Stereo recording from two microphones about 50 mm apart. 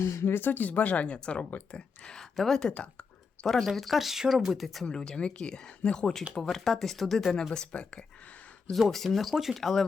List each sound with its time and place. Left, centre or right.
0.0 s speech: left
0.3 s speech: left
2.0 s speech: centre
2.7 s speech: left
3.4 s speech: centre
4.9 s speech: centre
6.5 s speech: centre
7.5 s speech: centre
8.9 s speech: centre